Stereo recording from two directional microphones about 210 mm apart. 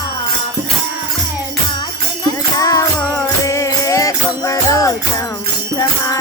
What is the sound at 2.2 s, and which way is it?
Music, 15° left (ahead or behind).